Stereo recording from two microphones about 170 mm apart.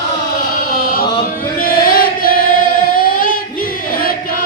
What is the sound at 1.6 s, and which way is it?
Chant, 60° left (ahead or behind).